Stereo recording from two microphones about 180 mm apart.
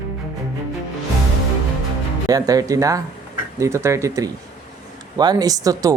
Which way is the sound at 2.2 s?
20° right (ahead or behind).